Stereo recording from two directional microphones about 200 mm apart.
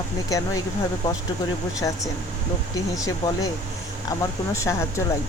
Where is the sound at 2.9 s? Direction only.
15° left (ahead or behind).